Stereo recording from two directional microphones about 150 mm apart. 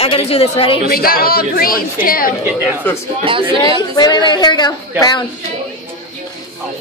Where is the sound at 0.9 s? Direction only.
80° left.